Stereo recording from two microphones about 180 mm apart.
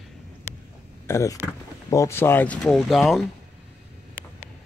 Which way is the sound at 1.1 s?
15° left (ahead or behind).